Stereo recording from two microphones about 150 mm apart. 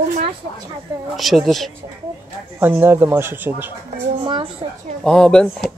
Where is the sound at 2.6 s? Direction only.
15° right (ahead or behind).